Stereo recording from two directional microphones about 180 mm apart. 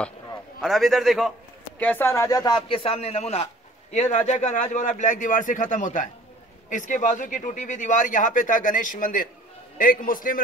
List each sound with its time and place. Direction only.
0.6 s a man's voice: centre (ahead or behind); by 10.4 s 50° left (ahead or behind)